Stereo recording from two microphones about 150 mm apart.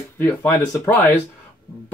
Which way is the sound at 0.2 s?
15° left (ahead or behind).